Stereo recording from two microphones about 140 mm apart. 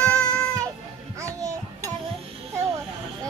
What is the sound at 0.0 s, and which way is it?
Music, 5° left (ahead or behind).